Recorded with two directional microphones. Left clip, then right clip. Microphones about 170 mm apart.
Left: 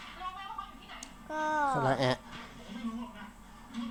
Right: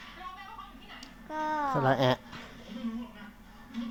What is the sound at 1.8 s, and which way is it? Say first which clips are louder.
Speech: right 3 dB; 10° right (ahead or behind).